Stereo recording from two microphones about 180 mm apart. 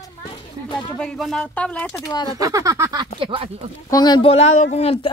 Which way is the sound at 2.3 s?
20° right (ahead or behind).